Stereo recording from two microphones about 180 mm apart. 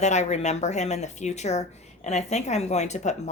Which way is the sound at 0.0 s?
40° left (ahead or behind).